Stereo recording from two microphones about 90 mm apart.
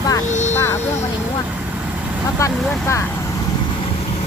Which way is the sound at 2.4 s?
35° left (ahead or behind).